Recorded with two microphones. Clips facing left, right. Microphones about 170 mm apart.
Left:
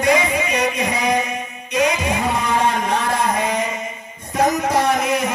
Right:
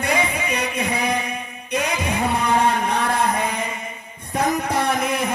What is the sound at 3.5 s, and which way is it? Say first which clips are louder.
Music: left 5 dB; 55° right (ahead or behind).